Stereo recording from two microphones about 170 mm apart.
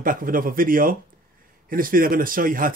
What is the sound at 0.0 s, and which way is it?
Speech, 55° right (ahead or behind).